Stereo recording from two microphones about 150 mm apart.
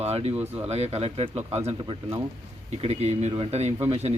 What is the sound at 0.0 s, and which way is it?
Speech, 45° right (ahead or behind).